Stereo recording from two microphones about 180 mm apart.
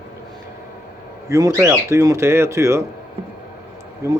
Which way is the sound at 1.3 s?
15° right (ahead or behind).